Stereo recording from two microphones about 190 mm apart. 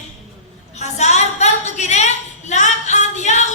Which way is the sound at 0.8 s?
35° left (ahead or behind).